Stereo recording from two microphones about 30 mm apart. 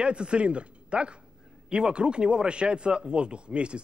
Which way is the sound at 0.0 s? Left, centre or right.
Right.